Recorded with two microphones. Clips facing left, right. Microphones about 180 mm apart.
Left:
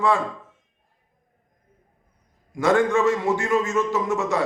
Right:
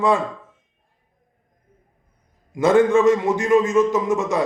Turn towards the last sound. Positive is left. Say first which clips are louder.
# right 3 dB
turn(degrees=-15)  # may be behind; listen again after turning